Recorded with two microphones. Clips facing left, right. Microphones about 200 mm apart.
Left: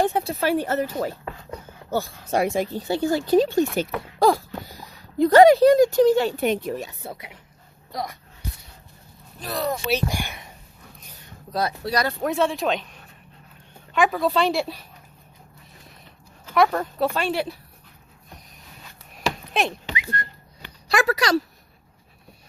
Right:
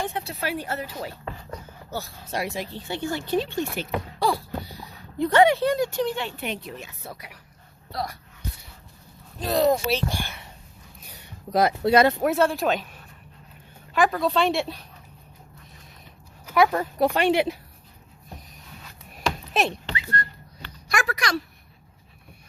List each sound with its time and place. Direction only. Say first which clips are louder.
0.0 s speech: left 7 dB; 40° left (ahead or behind)
7.1 s speech: left 3 dB; 25° left (ahead or behind)
9.4 s speech: right 6 dB; 25° right (ahead or behind)
9.9 s speech: left 2 dB; 15° left (ahead or behind)
11.9 s speech: right 10 dB; 25° right (ahead or behind)
12.2 s a woman's voice: right 1 dB; centre (ahead or behind)
16.5 s speech: even; 5° right (ahead or behind)
17.0 s speech: right 4 dB; 15° right (ahead or behind)
19.1 s a sound: even; centre (ahead or behind)
19.9 s whistling: even; 15° left (ahead or behind)
20.9 s speech: left 6 dB; 35° left (ahead or behind)